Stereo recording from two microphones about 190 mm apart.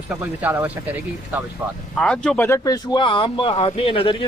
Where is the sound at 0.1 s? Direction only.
10° right (ahead or behind).